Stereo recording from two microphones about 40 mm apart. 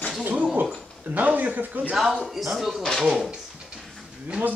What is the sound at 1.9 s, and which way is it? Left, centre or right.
Speech, centre.